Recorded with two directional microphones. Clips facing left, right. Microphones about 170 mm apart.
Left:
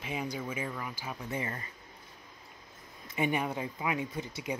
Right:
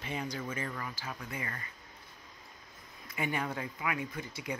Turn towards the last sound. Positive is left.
turn(degrees=25)  # may be behind; listen again after turning